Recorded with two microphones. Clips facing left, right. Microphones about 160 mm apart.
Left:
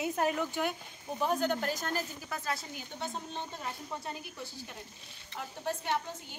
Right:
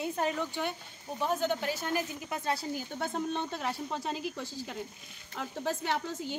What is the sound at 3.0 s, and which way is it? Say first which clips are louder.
A woman's voice: right 5 dB; 60° right (ahead or behind).